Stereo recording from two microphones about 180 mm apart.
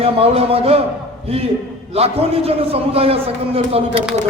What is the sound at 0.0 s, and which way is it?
A man's voice, 35° right (ahead or behind).